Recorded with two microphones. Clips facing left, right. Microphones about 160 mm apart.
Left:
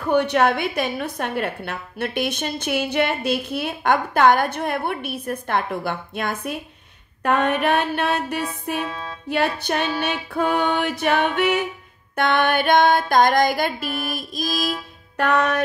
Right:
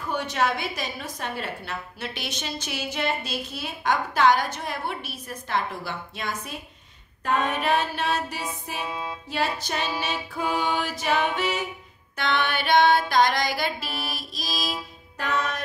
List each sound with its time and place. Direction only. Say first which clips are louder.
0.0 s a woman's voice: left 8 dB; 60° left (ahead or behind)
8.8 s music: left 1 dB; 10° right (ahead or behind)
9.3 s a woman's voice: left 7 dB; 60° left (ahead or behind)
12.2 s music: left 7 dB; 50° left (ahead or behind)
15.1 s a woman's voice: left 8 dB; 65° left (ahead or behind)